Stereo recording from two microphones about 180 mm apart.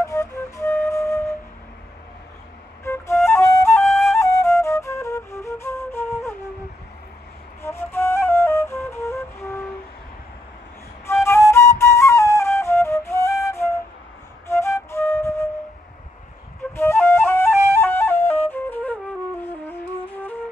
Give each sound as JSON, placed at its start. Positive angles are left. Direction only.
{"t": 0.0, "sound": "flute", "side_deg": 20}
{"t": 2.8, "sound": "flute", "side_deg": 15}
{"t": 3.8, "sound": "flute", "side_deg": 0}
{"t": 4.2, "sound": "flute", "side_deg": 15}
{"t": 7.6, "sound": "flute", "side_deg": 15}
{"t": 11.1, "sound": "flute", "side_deg": 15}
{"t": 16.7, "sound": "flute", "side_deg": 15}
{"t": 19.4, "sound": "music", "side_deg": 10}